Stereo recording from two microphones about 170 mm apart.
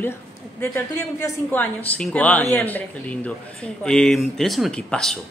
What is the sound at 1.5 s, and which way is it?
A man's voice, 10° left (ahead or behind).